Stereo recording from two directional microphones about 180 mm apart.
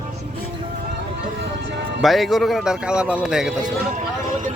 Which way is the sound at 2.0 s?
Centre (ahead or behind).